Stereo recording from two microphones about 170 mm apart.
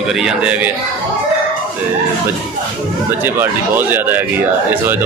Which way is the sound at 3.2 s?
10° right (ahead or behind).